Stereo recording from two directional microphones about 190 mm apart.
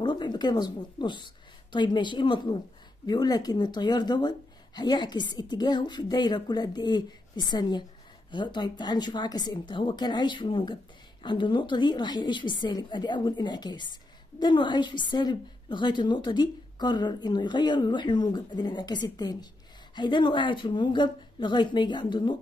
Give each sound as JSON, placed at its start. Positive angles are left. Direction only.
{"t": 0.0, "sound": "a woman's voice", "side_deg": 25}